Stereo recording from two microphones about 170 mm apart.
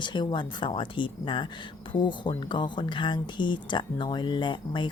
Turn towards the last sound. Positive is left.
turn(degrees=30)  # may be behind; listen again after turning